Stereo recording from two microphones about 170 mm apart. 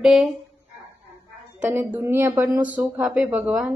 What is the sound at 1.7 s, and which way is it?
Speech, 15° right (ahead or behind).